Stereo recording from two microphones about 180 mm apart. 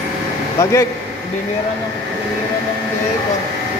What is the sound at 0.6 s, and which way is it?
Speech, 15° left (ahead or behind).